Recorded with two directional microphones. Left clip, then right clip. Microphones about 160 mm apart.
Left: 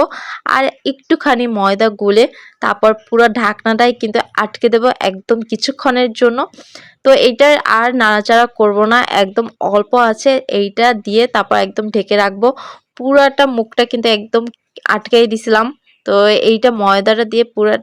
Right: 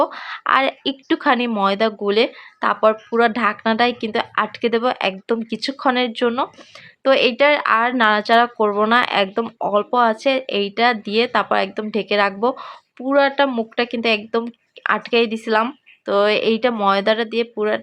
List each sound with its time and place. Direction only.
0.0 s speech: 35° left (ahead or behind)